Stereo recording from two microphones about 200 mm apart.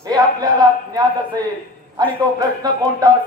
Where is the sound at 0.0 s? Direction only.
20° right (ahead or behind).